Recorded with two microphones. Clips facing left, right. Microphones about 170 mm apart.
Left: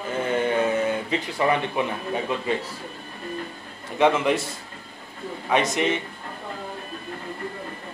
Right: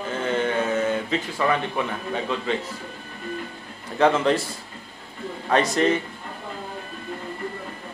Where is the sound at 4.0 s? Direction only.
15° left (ahead or behind).